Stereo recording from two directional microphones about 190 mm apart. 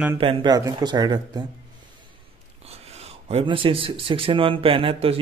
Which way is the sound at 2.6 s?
35° right (ahead or behind).